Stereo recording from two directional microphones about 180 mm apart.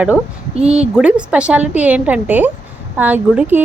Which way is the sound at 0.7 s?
5° right (ahead or behind).